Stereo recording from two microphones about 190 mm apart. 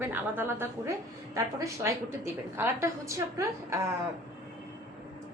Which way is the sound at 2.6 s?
15° right (ahead or behind).